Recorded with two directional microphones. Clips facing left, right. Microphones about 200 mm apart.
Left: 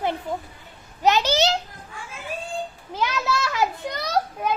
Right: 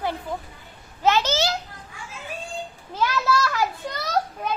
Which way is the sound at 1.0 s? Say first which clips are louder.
Left 2 dB; 15° left (ahead or behind).